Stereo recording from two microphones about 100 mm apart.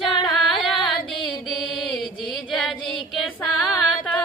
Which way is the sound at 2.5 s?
5° left (ahead or behind).